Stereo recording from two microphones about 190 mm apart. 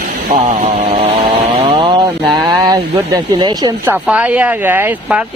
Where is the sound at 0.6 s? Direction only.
35° right (ahead or behind).